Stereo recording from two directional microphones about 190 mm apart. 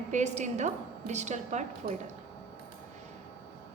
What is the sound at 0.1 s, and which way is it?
A woman's voice, 35° right (ahead or behind).